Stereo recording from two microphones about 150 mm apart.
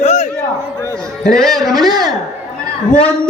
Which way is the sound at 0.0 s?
45° left (ahead or behind).